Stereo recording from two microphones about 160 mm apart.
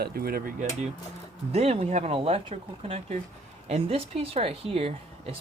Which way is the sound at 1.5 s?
40° right (ahead or behind).